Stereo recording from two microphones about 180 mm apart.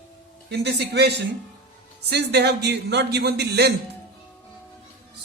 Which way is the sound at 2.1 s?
65° right (ahead or behind).